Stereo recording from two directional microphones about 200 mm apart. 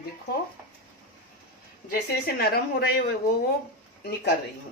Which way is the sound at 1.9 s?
50° left (ahead or behind).